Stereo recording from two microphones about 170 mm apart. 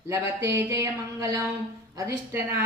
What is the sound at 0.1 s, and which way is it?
A woman's voice, 15° right (ahead or behind).